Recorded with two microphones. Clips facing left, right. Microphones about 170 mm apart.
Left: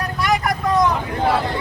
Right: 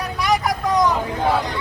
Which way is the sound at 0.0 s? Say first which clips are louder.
Even; centre (ahead or behind).